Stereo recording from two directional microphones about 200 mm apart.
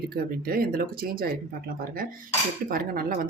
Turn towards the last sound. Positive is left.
turn(degrees=-45)  # may be behind; listen again after turning